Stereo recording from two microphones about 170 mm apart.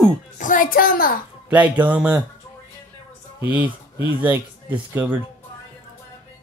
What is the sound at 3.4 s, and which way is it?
Speech, 10° right (ahead or behind).